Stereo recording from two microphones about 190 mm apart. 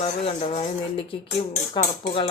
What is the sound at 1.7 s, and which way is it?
Dishes, 30° left (ahead or behind).